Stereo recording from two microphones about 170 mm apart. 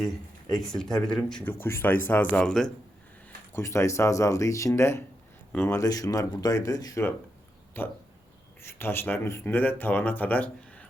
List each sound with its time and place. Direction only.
0.6 s speech: centre (ahead or behind)
3.5 s speech: 15° left (ahead or behind)